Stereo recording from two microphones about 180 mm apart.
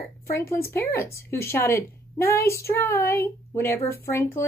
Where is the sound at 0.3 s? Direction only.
15° left (ahead or behind).